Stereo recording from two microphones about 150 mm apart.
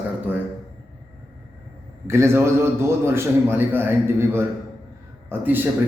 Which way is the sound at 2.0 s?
20° right (ahead or behind).